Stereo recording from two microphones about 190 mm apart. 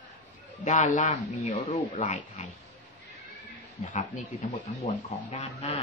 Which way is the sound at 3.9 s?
35° left (ahead or behind).